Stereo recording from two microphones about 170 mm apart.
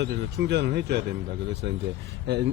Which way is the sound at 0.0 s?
90° right.